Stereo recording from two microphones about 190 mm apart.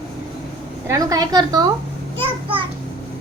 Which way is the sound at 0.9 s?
20° right (ahead or behind).